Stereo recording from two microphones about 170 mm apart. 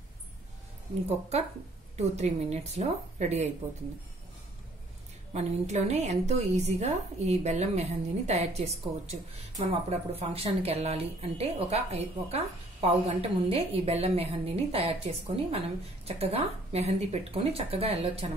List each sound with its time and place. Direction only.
2.0 s speech: 40° right (ahead or behind)
5.3 s speech: 40° right (ahead or behind)